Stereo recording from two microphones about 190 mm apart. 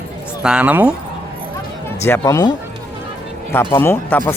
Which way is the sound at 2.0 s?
15° left (ahead or behind).